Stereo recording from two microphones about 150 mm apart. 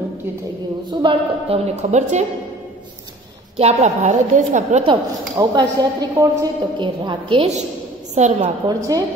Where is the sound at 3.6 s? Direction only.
50° right (ahead or behind).